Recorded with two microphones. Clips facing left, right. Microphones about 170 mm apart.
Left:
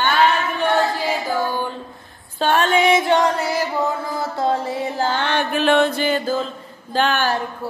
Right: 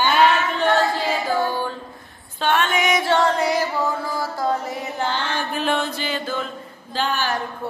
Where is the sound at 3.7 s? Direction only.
20° left (ahead or behind).